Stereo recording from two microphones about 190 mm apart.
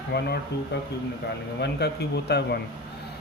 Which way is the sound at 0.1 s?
60° left (ahead or behind).